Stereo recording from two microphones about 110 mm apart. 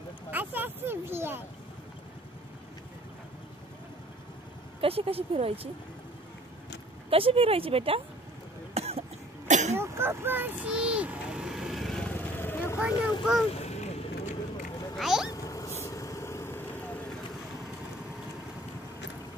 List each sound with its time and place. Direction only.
0.3 s a sound: 15° right (ahead or behind)
4.8 s speech: 60° right (ahead or behind)
7.1 s speech: 55° right (ahead or behind)
8.7 s cough: 65° right (ahead or behind)
9.5 s throat clearing: 90° right
9.8 s vehicle: 20° right (ahead or behind); by 12.0 s centre (ahead or behind)
12.0 s vehicle: 15° left (ahead or behind)
12.7 s speech: 10° right (ahead or behind)
13.5 s vehicle: 75° left (ahead or behind)
15.0 s a sound: 5° right (ahead or behind)
15.2 s a sound: 30° left (ahead or behind)
15.8 s vehicle: 30° left (ahead or behind)